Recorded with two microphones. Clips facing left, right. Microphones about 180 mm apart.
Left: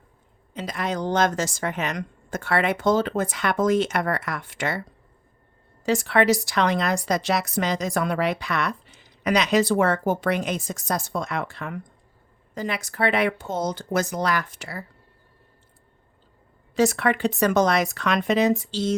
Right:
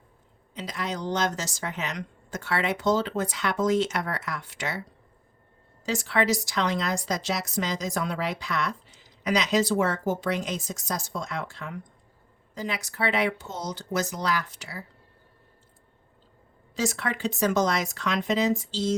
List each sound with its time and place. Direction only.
0.5 s speech: 50° left (ahead or behind)
5.8 s a woman's voice: 60° left (ahead or behind)
16.7 s a woman's voice: 60° left (ahead or behind)